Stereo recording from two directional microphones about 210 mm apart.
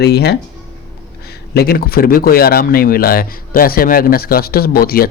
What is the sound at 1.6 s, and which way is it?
Speech, 45° left (ahead or behind).